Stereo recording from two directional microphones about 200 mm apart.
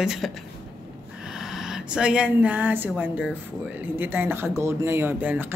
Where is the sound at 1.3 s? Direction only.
5° right (ahead or behind).